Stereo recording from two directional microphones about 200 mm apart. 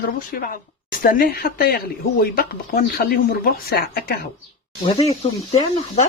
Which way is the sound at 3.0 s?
50° left (ahead or behind).